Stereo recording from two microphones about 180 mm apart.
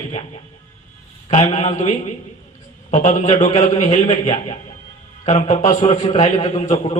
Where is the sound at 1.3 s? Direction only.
35° left (ahead or behind).